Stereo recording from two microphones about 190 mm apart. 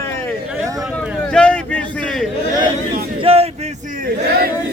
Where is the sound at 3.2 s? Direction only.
30° right (ahead or behind).